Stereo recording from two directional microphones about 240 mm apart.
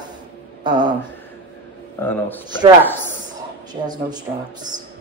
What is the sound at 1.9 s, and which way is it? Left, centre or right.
Speech, centre.